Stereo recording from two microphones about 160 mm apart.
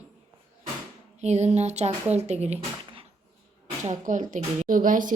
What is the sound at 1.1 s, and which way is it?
A woman's voice, 45° right (ahead or behind).